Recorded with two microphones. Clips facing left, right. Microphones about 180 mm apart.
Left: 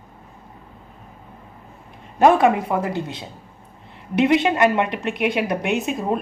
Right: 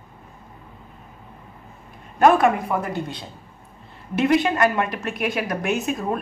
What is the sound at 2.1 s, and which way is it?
Speech, 25° left (ahead or behind).